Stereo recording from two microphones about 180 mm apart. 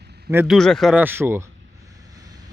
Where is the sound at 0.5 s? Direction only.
Centre (ahead or behind).